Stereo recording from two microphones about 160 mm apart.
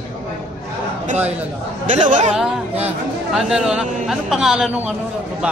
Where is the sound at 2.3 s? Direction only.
5° right (ahead or behind).